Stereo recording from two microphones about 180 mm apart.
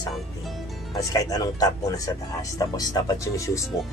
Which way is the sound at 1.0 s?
20° left (ahead or behind).